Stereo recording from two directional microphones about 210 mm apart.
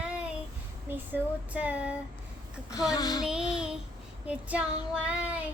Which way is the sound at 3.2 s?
5° right (ahead or behind).